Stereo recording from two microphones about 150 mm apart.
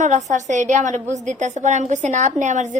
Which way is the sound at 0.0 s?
55° right (ahead or behind).